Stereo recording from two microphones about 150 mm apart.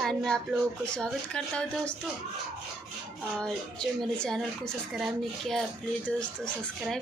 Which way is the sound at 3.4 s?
5° left (ahead or behind).